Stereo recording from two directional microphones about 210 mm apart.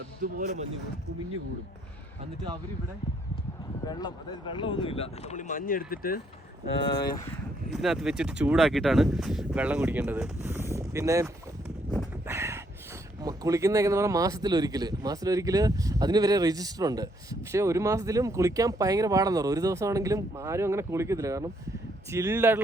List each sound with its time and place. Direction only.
0.2 s speech: 35° right (ahead or behind)
3.8 s speech: 20° left (ahead or behind); by 7.2 s 50° left (ahead or behind)
7.7 s speech: centre (ahead or behind)
12.2 s a sound: 15° right (ahead or behind)
13.2 s speech: 15° right (ahead or behind)